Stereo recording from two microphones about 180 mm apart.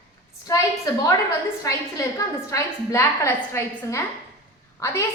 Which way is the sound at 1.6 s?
20° left (ahead or behind).